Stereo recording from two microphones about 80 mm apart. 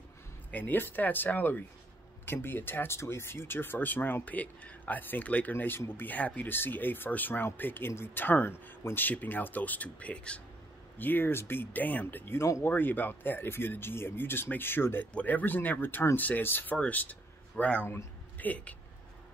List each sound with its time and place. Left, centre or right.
0.5 s speech: left
11.0 s speech: left
17.8 s a sound: left
18.5 s speech: centre